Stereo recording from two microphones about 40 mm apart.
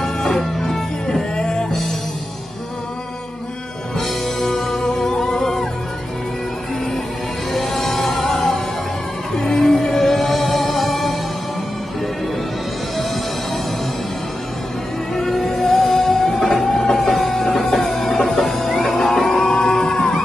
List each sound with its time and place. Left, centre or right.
0.0 s music: centre
1.3 s music: centre
4.0 s music: centre
7.5 s music: centre
15.1 s music: centre